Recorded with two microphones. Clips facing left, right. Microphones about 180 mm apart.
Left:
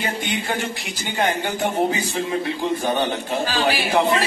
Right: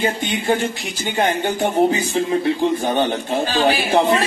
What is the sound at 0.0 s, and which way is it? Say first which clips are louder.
Speech: right 5 dB; 25° right (ahead or behind).